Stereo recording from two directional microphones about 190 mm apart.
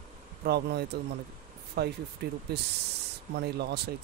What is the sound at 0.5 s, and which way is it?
Speech, 60° right (ahead or behind).